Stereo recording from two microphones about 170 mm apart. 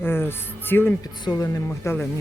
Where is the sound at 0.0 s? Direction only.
15° left (ahead or behind).